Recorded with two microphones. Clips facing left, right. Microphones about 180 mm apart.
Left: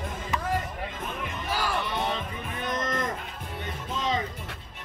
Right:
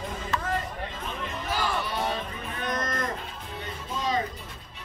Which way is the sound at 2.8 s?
20° left (ahead or behind).